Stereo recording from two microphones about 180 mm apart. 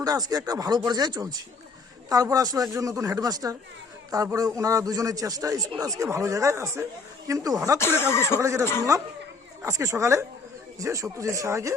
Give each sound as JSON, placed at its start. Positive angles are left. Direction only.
{"t": 0.0, "sound": "a man's voice", "side_deg": -20}
{"t": 7.8, "sound": "speech", "side_deg": 15}
{"t": 8.4, "sound": "speech", "side_deg": -15}
{"t": 9.6, "sound": "speech", "side_deg": -15}